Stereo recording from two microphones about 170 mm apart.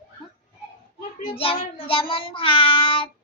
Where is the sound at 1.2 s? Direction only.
35° left (ahead or behind).